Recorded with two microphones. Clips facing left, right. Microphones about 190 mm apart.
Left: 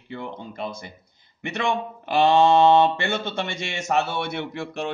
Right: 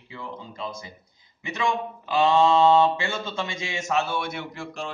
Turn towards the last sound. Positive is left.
turn(degrees=65)  # may be behind; listen again after turning